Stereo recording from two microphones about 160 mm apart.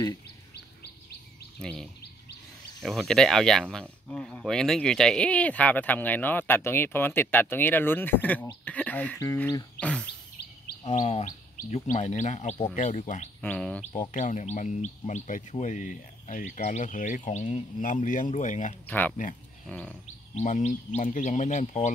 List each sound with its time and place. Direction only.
1.6 s speech: 5° left (ahead or behind); by 9.7 s 20° left (ahead or behind)
9.8 s speech: 10° left (ahead or behind)
11.0 s speech: 50° left (ahead or behind)
13.4 s speech: 10° left (ahead or behind)
14.1 s speech: 50° left (ahead or behind)
18.9 s speech: 10° left (ahead or behind)
20.3 s speech: 50° left (ahead or behind)